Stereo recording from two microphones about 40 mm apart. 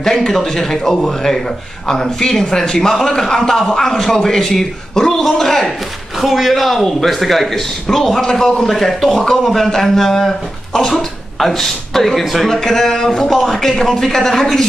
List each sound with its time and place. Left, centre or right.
0.0 s speech: centre
6.2 s speech: centre
9.2 s speech: centre
12.5 s speech: centre